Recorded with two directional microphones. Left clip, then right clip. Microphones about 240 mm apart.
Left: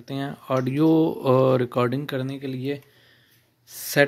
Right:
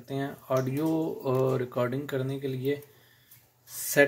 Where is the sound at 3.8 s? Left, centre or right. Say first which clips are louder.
Left 3 dB; left.